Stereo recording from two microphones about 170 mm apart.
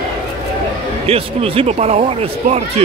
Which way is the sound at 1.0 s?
35° right (ahead or behind).